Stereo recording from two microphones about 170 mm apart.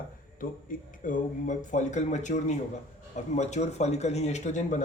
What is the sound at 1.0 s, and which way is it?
Speech, 50° left (ahead or behind).